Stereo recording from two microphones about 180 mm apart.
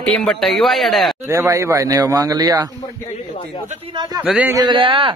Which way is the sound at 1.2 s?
15° right (ahead or behind).